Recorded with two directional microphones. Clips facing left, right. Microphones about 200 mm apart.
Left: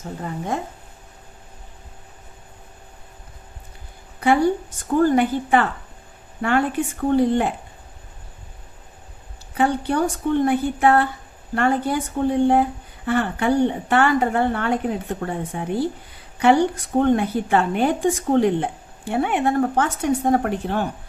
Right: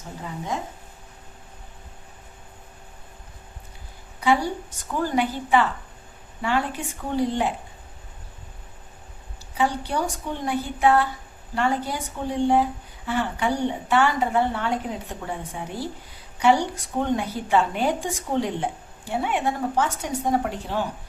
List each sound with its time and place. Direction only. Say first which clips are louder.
0.2 s a woman's voice: left 3 dB; 55° left (ahead or behind)
4.8 s a woman's voice: left 7 dB; 50° left (ahead or behind)
9.6 s a woman's voice: left 5 dB; 55° left (ahead or behind)
13.1 s a woman's voice: left 5 dB; 55° left (ahead or behind)